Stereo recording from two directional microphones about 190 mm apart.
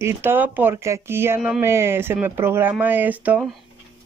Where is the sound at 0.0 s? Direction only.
10° right (ahead or behind).